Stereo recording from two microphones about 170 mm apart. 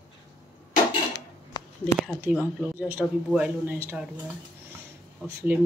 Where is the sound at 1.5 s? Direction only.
25° left (ahead or behind).